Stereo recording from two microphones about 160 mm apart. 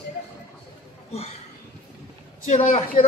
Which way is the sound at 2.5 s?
40° left (ahead or behind).